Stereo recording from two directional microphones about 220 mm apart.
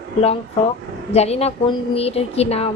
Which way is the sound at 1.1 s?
30° left (ahead or behind).